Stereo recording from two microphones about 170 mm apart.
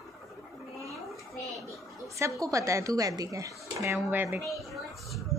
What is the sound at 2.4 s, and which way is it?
A woman's voice, 20° right (ahead or behind).